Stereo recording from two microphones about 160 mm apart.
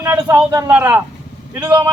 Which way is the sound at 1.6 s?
25° right (ahead or behind).